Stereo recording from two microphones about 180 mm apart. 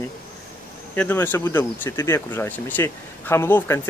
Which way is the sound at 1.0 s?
10° left (ahead or behind).